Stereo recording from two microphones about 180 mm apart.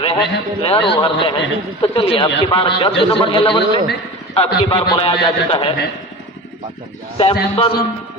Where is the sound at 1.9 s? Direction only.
25° left (ahead or behind).